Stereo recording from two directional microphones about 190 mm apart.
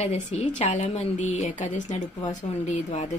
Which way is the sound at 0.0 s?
35° left (ahead or behind).